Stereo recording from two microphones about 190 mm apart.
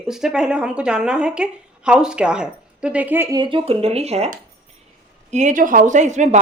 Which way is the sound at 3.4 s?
25° right (ahead or behind).